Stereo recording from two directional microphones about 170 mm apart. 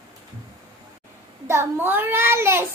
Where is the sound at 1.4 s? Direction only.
15° right (ahead or behind).